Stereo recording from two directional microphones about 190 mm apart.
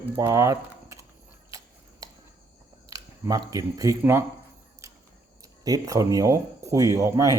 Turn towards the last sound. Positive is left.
turn(degrees=-15)  # may be behind; listen again after turning